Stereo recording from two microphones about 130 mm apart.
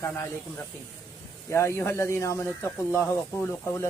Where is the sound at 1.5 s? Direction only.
20° left (ahead or behind).